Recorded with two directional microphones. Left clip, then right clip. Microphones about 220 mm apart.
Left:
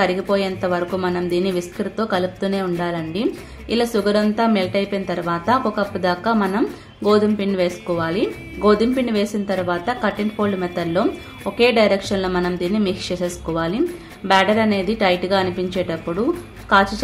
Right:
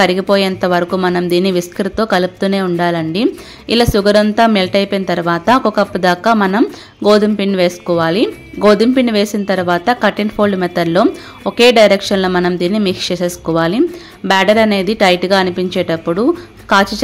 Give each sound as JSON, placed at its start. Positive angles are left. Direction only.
{"t": 0.0, "sound": "a woman's voice", "side_deg": -35}